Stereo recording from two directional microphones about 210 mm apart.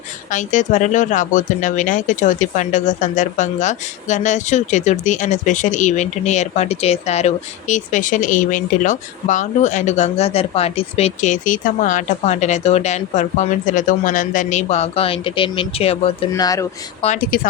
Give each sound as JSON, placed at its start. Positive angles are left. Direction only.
{"t": 0.3, "sound": "speech", "side_deg": 35}
{"t": 16.3, "sound": "speech", "side_deg": 15}
{"t": 17.2, "sound": "speech", "side_deg": 45}